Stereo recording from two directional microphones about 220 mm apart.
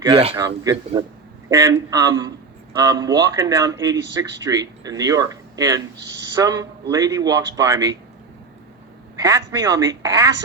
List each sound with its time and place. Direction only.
0.0 s speech: 25° right (ahead or behind)
9.1 s speech: 15° right (ahead or behind)